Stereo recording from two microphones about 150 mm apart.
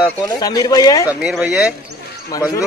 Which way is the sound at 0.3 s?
25° left (ahead or behind).